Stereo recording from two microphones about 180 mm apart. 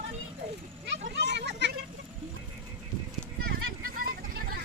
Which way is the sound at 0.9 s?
70° right (ahead or behind).